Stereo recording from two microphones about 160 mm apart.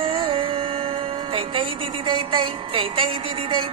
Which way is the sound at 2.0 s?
35° right (ahead or behind).